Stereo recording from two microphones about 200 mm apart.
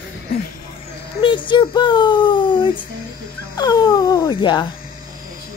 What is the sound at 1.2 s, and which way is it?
Speech, 25° left (ahead or behind).